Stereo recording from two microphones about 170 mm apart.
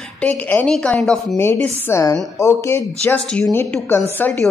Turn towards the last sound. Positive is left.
turn(degrees=10)  # may be behind; listen again after turning